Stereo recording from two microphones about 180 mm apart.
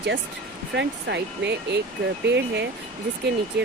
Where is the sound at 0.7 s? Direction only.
75° right (ahead or behind).